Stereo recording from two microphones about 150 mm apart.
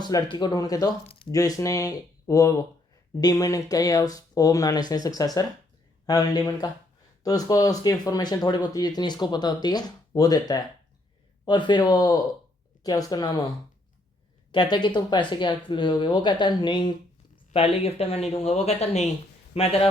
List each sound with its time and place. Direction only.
0.0 s speech: 25° left (ahead or behind)
14.5 s speech: 30° left (ahead or behind)